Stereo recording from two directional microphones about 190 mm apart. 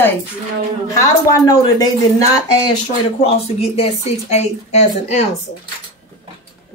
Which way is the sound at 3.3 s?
30° left (ahead or behind).